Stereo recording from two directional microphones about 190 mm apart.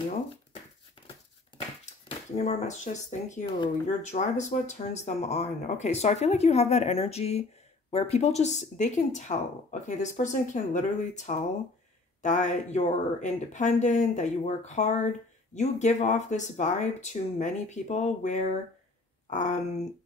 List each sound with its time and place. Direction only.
2.3 s speech: 35° left (ahead or behind)